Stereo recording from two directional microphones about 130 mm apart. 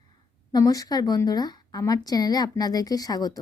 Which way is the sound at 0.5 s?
30° left (ahead or behind).